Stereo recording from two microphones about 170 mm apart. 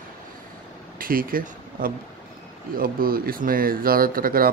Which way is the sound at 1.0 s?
55° right (ahead or behind).